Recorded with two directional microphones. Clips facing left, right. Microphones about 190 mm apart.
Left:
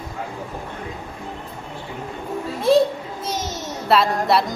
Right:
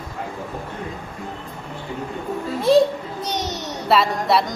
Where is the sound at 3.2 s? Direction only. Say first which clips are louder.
Right 1 dB; centre (ahead or behind).